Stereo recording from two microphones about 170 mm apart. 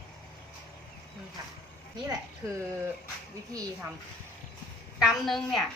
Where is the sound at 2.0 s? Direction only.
20° right (ahead or behind).